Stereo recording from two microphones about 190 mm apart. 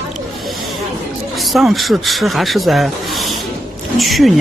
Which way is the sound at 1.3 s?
Centre (ahead or behind).